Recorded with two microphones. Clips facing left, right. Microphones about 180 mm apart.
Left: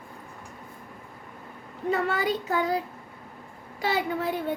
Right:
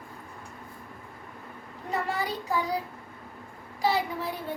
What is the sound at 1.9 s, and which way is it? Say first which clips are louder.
Speech: left 4 dB; 60° left (ahead or behind).